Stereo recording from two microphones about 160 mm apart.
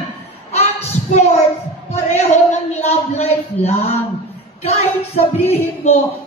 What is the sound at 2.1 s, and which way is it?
Speech, 45° left (ahead or behind).